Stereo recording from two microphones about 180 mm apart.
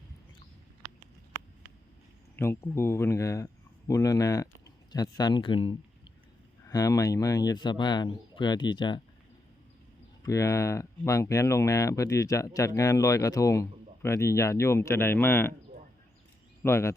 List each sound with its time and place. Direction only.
2.3 s speech: 15° left (ahead or behind)
10.2 s speech: 15° left (ahead or behind)
16.6 s speech: 15° left (ahead or behind)